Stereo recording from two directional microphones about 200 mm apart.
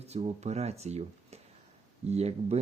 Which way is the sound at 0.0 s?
35° right (ahead or behind).